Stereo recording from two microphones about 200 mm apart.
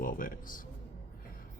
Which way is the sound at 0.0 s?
45° left (ahead or behind).